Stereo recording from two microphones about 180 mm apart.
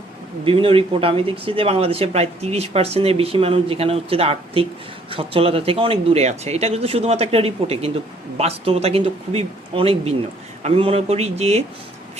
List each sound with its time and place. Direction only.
0.4 s speech: 30° right (ahead or behind)